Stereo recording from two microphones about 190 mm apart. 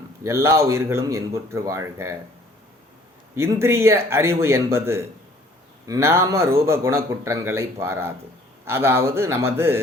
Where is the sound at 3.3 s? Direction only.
15° right (ahead or behind).